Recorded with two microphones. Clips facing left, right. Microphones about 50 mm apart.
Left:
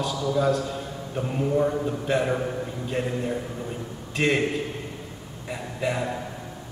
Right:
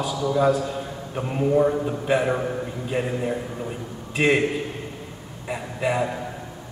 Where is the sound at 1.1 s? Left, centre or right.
Centre.